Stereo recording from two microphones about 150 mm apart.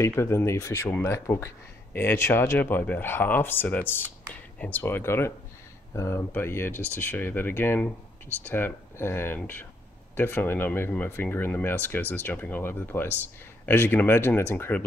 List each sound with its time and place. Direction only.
0.0 s speech: 15° left (ahead or behind)